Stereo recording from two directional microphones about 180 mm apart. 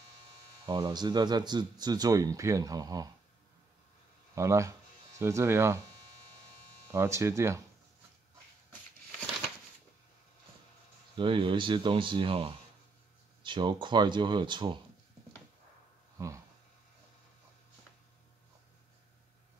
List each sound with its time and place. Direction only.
0.7 s speech: 25° right (ahead or behind)
4.4 s speech: 15° right (ahead or behind)
6.9 s speech: 15° right (ahead or behind)
11.1 s speech: 30° right (ahead or behind)